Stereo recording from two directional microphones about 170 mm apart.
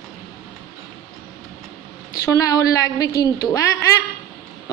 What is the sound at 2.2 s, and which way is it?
A woman's voice, 20° left (ahead or behind).